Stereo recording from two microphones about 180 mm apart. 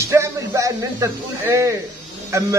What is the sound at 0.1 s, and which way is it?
A man's voice, 15° right (ahead or behind).